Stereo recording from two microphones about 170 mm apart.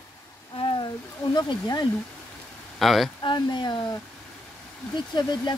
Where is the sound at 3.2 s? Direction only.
25° left (ahead or behind).